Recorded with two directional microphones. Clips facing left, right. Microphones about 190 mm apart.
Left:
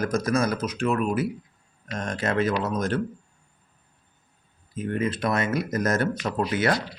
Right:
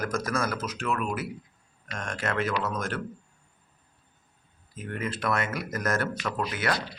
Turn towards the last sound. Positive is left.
turn(degrees=25)  # may be behind; listen again after turning